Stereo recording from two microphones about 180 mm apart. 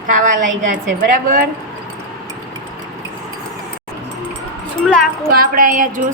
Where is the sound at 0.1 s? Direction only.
45° right (ahead or behind).